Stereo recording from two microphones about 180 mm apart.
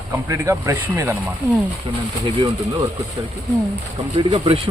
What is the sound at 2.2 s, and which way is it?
Speech, 25° right (ahead or behind).